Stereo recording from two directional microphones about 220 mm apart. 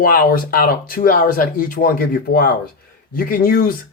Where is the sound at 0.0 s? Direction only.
40° left (ahead or behind).